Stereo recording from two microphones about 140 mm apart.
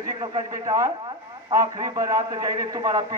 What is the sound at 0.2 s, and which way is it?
Speech, 35° right (ahead or behind).